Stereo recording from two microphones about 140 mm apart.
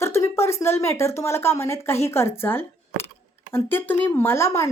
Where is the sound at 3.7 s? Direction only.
15° left (ahead or behind).